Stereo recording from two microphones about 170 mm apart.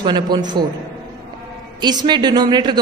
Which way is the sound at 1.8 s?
25° right (ahead or behind).